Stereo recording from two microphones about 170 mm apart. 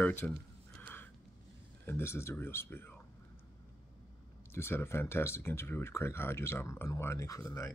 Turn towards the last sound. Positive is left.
turn(degrees=20)  # may be behind; listen again after turning